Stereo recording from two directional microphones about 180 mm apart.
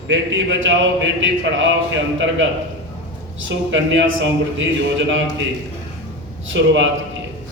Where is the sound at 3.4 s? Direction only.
90° right.